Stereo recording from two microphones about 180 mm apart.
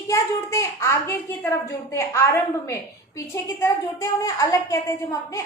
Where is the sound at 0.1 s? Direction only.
15° left (ahead or behind).